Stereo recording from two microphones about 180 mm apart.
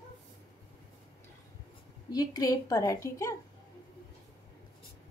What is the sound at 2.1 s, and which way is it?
A woman's voice, 20° left (ahead or behind).